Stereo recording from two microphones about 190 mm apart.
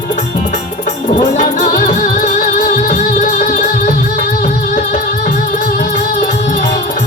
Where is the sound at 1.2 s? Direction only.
45° left (ahead or behind).